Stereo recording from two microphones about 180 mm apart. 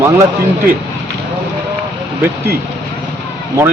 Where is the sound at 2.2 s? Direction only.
10° right (ahead or behind).